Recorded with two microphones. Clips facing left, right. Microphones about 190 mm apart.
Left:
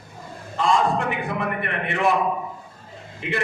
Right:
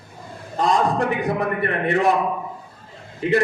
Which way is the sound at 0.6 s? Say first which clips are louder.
Right 1 dB; 40° right (ahead or behind).